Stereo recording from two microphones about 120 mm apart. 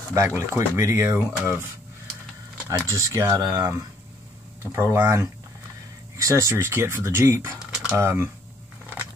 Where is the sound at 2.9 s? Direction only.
25° right (ahead or behind).